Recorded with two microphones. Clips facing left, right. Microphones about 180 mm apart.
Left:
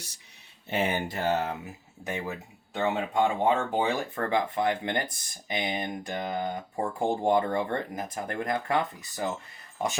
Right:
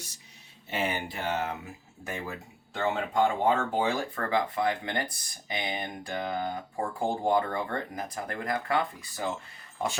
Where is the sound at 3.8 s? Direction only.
25° left (ahead or behind).